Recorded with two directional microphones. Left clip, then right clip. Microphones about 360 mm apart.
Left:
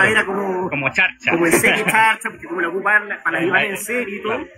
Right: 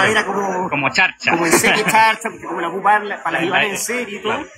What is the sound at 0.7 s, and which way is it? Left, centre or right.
Speech, centre.